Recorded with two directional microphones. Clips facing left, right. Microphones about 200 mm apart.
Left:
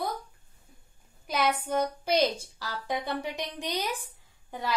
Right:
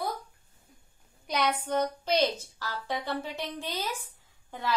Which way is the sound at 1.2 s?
5° left (ahead or behind).